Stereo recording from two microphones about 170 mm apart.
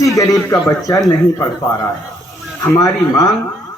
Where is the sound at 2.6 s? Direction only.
20° left (ahead or behind).